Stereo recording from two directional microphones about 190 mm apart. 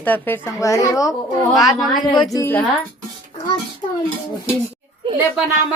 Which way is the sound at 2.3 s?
15° left (ahead or behind).